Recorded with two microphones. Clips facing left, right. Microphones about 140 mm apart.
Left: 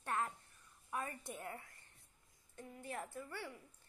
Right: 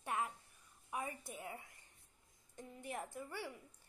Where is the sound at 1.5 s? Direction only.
15° right (ahead or behind).